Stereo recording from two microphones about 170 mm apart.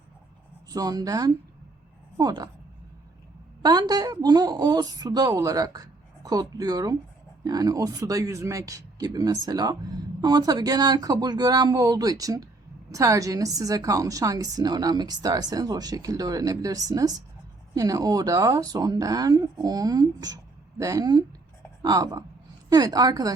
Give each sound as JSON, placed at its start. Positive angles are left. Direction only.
{"t": 0.7, "sound": "a woman's voice", "side_deg": -20}
{"t": 3.6, "sound": "a woman's voice", "side_deg": -25}